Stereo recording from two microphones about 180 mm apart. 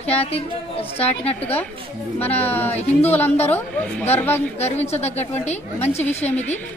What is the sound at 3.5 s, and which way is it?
Speech, 10° left (ahead or behind).